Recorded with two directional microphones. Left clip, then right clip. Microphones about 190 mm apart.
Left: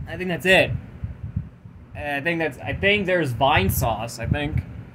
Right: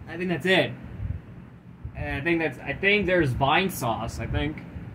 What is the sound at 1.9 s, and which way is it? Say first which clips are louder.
Speech: left 2 dB; 60° left (ahead or behind).